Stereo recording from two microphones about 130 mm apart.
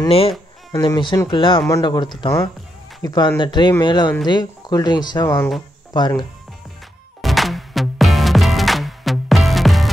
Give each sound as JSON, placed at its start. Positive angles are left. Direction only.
{"t": 0.7, "sound": "speech", "side_deg": 30}
{"t": 7.2, "sound": "music", "side_deg": 0}